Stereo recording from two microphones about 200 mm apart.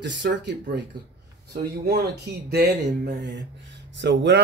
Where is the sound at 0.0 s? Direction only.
60° right (ahead or behind).